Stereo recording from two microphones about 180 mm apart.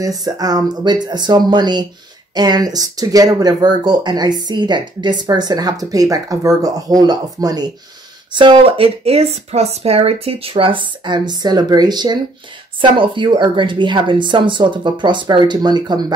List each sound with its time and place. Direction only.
0.0 s speech: 20° right (ahead or behind)